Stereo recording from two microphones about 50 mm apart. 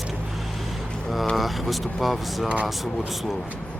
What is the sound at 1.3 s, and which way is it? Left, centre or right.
Speech, centre.